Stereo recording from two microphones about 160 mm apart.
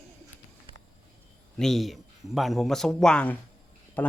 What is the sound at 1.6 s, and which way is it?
A man's voice, centre (ahead or behind).